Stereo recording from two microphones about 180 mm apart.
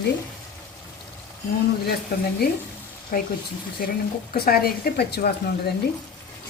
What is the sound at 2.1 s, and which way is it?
Speech, 60° left (ahead or behind).